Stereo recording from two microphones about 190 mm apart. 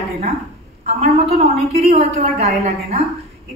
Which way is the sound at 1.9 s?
35° right (ahead or behind).